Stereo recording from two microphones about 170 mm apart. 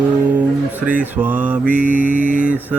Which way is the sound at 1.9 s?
50° right (ahead or behind).